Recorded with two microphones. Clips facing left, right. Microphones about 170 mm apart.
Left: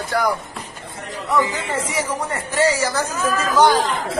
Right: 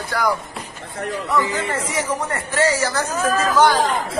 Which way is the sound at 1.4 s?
15° left (ahead or behind).